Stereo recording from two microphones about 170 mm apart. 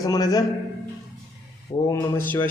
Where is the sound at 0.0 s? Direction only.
20° left (ahead or behind).